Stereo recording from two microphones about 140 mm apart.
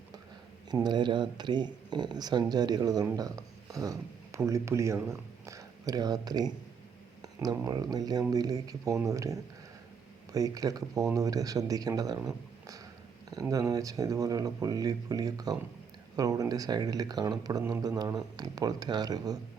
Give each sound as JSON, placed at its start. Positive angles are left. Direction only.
{"t": 0.7, "sound": "speech", "side_deg": -30}
{"t": 13.5, "sound": "speech", "side_deg": -25}